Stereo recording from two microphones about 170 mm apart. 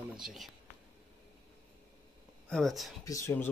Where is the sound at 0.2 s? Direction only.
Centre (ahead or behind).